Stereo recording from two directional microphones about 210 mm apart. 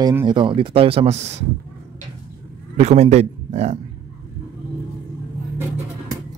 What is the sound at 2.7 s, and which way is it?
A man's voice, 30° right (ahead or behind).